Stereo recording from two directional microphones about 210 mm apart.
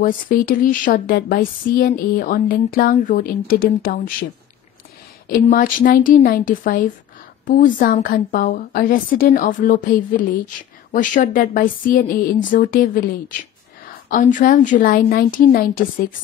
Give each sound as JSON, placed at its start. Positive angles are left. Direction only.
{"t": 0.0, "sound": "a woman's voice", "side_deg": 40}
{"t": 5.3, "sound": "a woman's voice", "side_deg": 40}